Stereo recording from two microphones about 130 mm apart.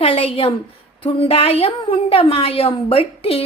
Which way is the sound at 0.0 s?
45° left (ahead or behind).